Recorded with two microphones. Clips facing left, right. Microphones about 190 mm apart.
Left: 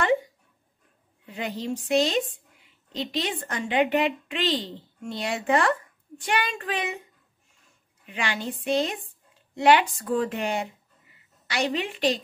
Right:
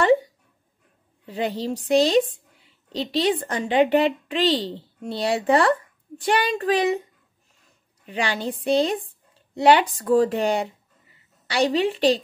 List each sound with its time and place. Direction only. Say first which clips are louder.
1.2 s a woman's voice: right 5 dB; 35° right (ahead or behind)
8.0 s a woman's voice: right 5 dB; 35° right (ahead or behind)